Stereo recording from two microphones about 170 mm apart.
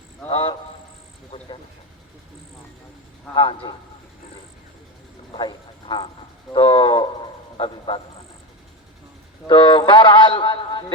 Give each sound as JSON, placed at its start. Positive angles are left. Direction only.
{"t": 0.3, "sound": "a sound", "side_deg": 30}
{"t": 1.3, "sound": "vehicle", "side_deg": 30}
{"t": 3.3, "sound": "a man's voice", "side_deg": 30}
{"t": 5.3, "sound": "speech", "side_deg": 25}
{"t": 6.5, "sound": "a sound", "side_deg": 30}
{"t": 9.5, "sound": "a man's voice", "side_deg": 30}